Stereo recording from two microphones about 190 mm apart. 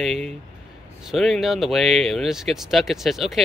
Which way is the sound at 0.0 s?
Centre (ahead or behind).